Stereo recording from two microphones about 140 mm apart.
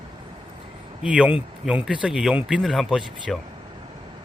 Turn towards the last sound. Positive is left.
turn(degrees=-5)  # may be behind; listen again after turning